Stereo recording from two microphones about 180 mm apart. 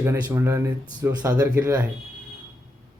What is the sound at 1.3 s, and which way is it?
Speech, 5° right (ahead or behind).